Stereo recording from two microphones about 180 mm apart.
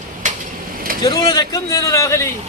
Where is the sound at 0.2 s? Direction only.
45° right (ahead or behind).